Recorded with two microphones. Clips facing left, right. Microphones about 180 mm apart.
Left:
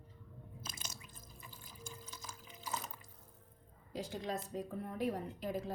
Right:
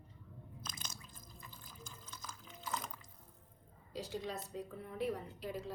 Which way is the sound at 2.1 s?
20° left (ahead or behind).